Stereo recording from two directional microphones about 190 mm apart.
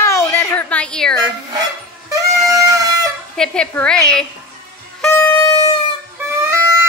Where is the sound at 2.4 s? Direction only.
15° right (ahead or behind).